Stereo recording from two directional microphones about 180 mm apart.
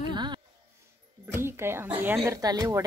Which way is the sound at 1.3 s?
15° right (ahead or behind).